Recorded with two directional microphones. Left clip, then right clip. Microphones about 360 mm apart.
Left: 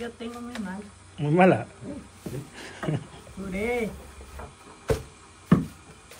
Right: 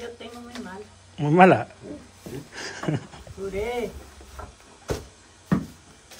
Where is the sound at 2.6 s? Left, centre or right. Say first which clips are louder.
Right 4 dB; centre.